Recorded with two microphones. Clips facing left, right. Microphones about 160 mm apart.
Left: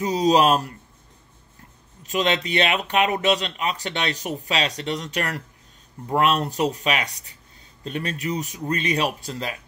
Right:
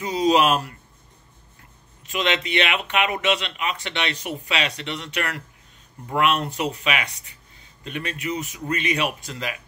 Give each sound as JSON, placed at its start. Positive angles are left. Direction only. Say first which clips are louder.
{"t": 0.0, "sound": "speech", "louder": "left 1 dB", "side_deg": 40}
{"t": 2.0, "sound": "speech", "louder": "left 2 dB", "side_deg": 40}